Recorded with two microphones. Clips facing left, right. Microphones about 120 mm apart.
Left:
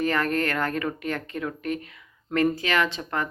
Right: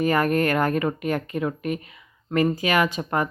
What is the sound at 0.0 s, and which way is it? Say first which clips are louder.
Speech: right 4 dB; 10° right (ahead or behind).